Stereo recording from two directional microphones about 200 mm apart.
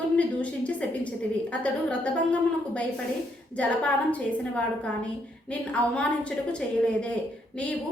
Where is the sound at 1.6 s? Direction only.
5° left (ahead or behind).